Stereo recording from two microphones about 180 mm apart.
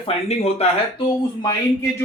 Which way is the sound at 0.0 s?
35° left (ahead or behind).